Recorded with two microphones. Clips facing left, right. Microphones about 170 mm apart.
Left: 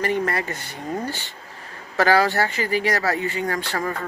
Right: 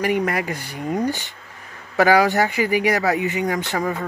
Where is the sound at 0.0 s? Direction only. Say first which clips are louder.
Right 2 dB; 10° right (ahead or behind).